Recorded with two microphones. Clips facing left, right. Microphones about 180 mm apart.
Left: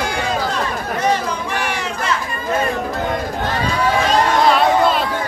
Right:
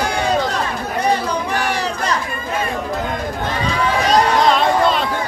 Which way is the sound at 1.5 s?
35° right (ahead or behind).